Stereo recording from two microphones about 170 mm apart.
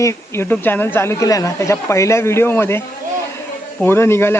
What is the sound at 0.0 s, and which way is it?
Speech, 15° left (ahead or behind).